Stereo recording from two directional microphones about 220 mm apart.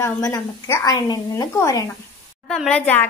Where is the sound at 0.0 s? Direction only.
15° left (ahead or behind).